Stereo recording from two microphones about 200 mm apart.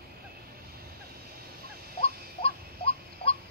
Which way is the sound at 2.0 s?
30° left (ahead or behind).